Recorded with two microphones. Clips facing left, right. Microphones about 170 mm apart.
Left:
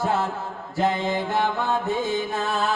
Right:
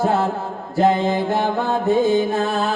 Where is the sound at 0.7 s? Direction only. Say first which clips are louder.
Right 6 dB; 50° right (ahead or behind).